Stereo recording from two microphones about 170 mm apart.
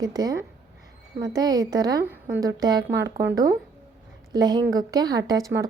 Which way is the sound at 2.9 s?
90° right.